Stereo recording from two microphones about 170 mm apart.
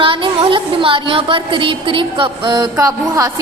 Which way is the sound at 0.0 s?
30° right (ahead or behind).